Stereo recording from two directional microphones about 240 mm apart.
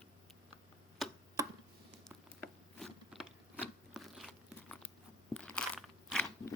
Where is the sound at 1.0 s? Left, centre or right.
Centre.